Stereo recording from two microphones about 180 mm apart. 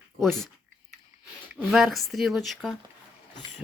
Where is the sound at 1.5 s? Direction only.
5° right (ahead or behind).